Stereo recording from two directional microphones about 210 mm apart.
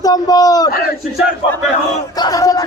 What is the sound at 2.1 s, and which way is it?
Speech, 20° left (ahead or behind).